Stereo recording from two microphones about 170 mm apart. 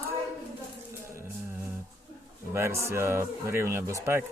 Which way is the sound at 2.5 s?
15° right (ahead or behind).